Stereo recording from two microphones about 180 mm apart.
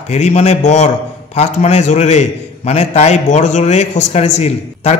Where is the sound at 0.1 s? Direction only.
40° left (ahead or behind).